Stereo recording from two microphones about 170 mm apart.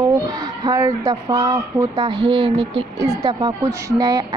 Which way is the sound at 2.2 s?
30° right (ahead or behind).